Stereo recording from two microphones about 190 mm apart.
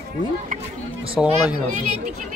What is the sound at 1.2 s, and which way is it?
Speech, 5° right (ahead or behind).